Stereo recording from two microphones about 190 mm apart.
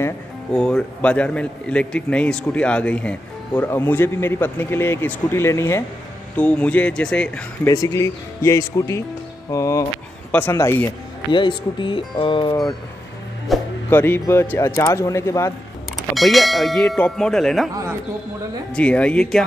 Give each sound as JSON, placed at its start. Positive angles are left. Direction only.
{"t": 0.5, "sound": "a man's voice", "side_deg": 5}
{"t": 7.6, "sound": "a man's voice", "side_deg": 20}
{"t": 11.3, "sound": "speech", "side_deg": 25}
{"t": 13.5, "sound": "music", "side_deg": 0}
{"t": 13.8, "sound": "a man's voice", "side_deg": 10}
{"t": 16.2, "sound": "speech", "side_deg": 0}
{"t": 18.7, "sound": "speech", "side_deg": 5}